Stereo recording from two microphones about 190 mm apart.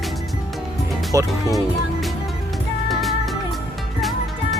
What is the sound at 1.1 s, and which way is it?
Speech, 15° right (ahead or behind).